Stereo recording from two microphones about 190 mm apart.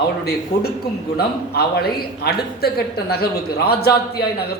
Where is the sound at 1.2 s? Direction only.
55° left (ahead or behind).